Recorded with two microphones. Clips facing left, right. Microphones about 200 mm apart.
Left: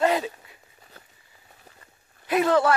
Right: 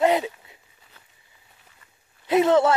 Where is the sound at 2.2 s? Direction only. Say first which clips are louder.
Right 3 dB; 25° right (ahead or behind).